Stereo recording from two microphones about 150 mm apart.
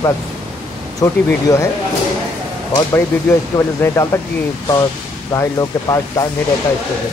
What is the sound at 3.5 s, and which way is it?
Speech, 20° left (ahead or behind).